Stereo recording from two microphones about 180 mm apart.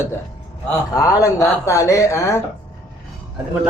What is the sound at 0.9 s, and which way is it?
Speech, 20° left (ahead or behind).